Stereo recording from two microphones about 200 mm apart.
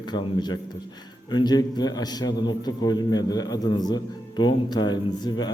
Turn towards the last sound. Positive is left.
turn(degrees=20)  # may be behind; listen again after turning